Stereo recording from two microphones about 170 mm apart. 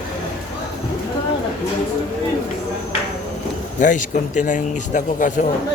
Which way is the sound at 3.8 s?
50° left (ahead or behind).